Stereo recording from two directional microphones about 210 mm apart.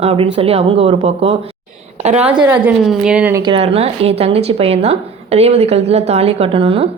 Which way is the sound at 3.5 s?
30° right (ahead or behind).